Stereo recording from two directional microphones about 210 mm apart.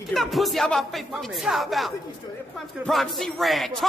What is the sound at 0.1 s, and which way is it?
Speech, centre (ahead or behind).